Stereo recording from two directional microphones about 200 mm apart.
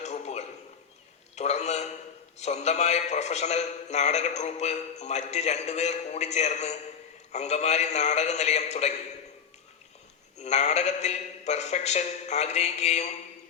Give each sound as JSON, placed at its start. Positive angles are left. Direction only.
{"t": 0.0, "sound": "a sound", "side_deg": 35}
{"t": 1.4, "sound": "a man's voice", "side_deg": 35}
{"t": 10.3, "sound": "a man's voice", "side_deg": 35}